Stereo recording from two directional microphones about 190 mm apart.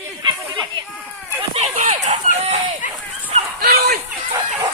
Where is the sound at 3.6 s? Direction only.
55° right (ahead or behind).